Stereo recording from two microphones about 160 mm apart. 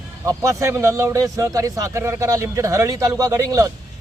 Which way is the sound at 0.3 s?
20° right (ahead or behind).